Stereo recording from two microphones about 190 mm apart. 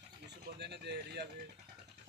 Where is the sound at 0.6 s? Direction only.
60° right (ahead or behind).